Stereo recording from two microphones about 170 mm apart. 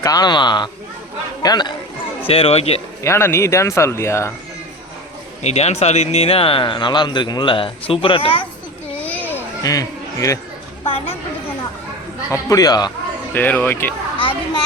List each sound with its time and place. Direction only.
0.0 s speech: 20° left (ahead or behind)
2.2 s speech: 35° left (ahead or behind)
3.0 s speech: 15° left (ahead or behind)
5.4 s speech: 40° left (ahead or behind)
9.0 s children playing: 10° left (ahead or behind)
10.8 s a woman's voice: 35° left (ahead or behind)
12.3 s speech: 20° left (ahead or behind)
13.3 s speech: 10° left (ahead or behind)
14.2 s a child's voice: 30° left (ahead or behind)